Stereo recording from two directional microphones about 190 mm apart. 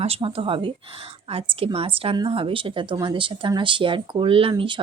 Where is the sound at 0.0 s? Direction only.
30° right (ahead or behind).